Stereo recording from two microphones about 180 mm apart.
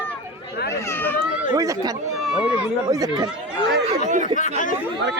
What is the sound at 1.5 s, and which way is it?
Speech, 20° right (ahead or behind).